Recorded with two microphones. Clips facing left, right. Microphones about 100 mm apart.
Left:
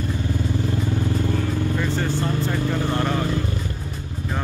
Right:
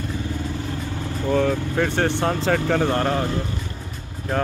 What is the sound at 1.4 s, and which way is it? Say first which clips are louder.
Speech: right 3 dB; 70° right (ahead or behind).